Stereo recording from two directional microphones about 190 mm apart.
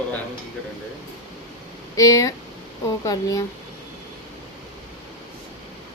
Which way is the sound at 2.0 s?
20° left (ahead or behind).